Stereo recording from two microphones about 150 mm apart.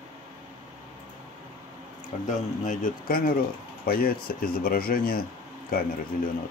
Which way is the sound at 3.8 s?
75° left (ahead or behind).